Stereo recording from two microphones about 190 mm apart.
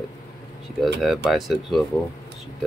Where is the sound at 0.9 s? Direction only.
Centre (ahead or behind).